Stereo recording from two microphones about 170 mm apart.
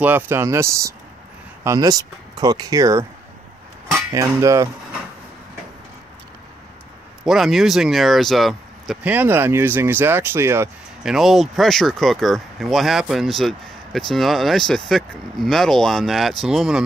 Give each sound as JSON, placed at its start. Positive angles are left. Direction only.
{"t": 0.0, "sound": "speech", "side_deg": -10}
{"t": 3.9, "sound": "cutlery", "side_deg": -15}
{"t": 7.2, "sound": "speech", "side_deg": 0}
{"t": 11.1, "sound": "speech", "side_deg": 0}